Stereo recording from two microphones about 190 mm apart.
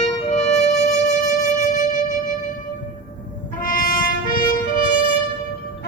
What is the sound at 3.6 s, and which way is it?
Music, 45° left (ahead or behind).